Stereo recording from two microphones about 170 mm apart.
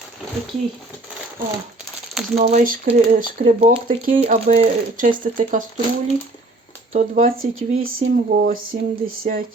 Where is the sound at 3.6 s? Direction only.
35° right (ahead or behind).